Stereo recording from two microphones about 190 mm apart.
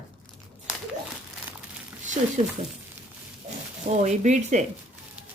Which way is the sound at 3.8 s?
40° right (ahead or behind).